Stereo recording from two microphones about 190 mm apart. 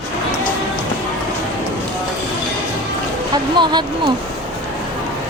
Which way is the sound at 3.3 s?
20° right (ahead or behind).